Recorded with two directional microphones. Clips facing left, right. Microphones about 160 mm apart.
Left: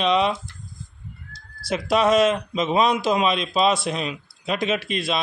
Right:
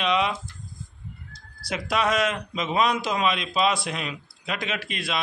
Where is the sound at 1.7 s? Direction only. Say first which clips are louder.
Left 6 dB; 25° left (ahead or behind).